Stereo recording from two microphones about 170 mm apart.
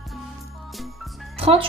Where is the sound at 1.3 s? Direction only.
35° right (ahead or behind).